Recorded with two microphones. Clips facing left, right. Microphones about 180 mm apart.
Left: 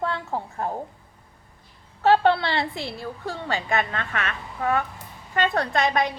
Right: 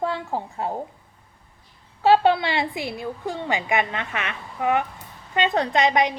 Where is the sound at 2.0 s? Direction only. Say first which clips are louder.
Right 1 dB; 15° right (ahead or behind).